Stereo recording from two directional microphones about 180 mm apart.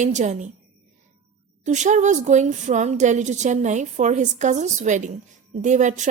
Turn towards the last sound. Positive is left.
turn(degrees=-40)  # may be behind; listen again after turning